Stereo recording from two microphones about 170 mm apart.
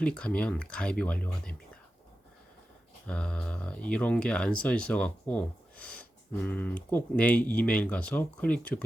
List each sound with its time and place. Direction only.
0.0 s speech: 5° left (ahead or behind)
3.1 s speech: 5° left (ahead or behind)